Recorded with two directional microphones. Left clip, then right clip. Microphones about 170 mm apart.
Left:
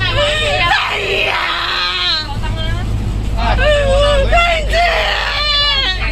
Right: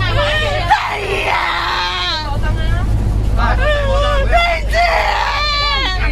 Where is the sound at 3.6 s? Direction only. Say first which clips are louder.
Left 6 dB; 5° left (ahead or behind).